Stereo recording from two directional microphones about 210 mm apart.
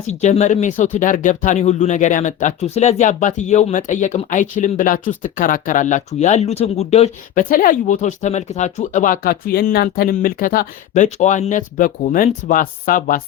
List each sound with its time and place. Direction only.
0.1 s speech: 30° left (ahead or behind)